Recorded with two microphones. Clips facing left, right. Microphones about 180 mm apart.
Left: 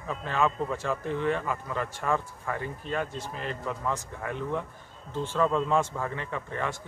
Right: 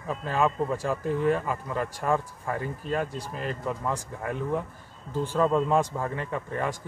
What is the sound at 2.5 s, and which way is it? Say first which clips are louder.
Speech: right 3 dB; 40° right (ahead or behind).